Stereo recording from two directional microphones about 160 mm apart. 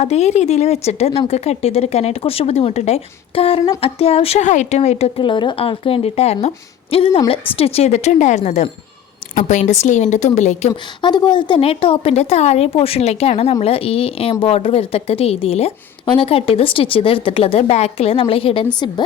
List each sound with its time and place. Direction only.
0.0 s a woman's voice: 45° left (ahead or behind)
11.0 s a woman's voice: 30° left (ahead or behind)